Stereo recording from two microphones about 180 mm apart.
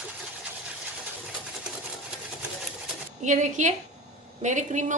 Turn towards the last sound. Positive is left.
turn(degrees=-40)  # may be behind; listen again after turning